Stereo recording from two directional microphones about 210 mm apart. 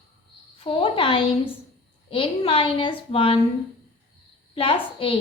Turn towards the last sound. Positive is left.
turn(degrees=25)  # may be behind; listen again after turning